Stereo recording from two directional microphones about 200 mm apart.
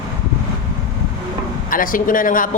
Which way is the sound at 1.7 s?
45° left (ahead or behind).